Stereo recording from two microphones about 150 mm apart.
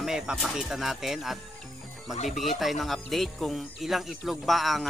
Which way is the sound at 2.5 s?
Centre (ahead or behind).